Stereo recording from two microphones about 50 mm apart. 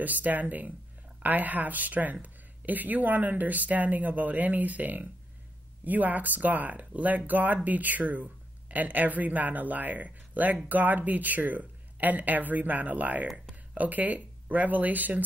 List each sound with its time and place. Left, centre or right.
0.0 s speech: right